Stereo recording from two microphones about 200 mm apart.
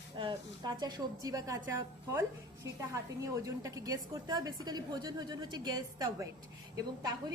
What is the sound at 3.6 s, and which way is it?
A woman's voice, 15° right (ahead or behind).